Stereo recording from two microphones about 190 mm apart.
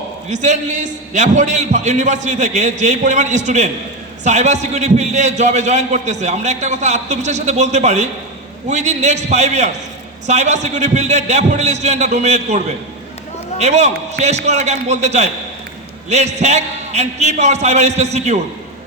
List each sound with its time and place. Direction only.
0.3 s a man's voice: 35° right (ahead or behind)